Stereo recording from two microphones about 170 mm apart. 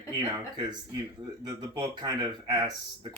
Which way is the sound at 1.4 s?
25° right (ahead or behind).